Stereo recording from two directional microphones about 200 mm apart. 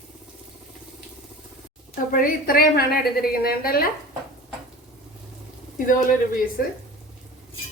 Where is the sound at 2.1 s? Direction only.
45° left (ahead or behind).